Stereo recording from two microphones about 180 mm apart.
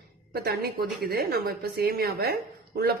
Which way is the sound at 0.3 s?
55° right (ahead or behind).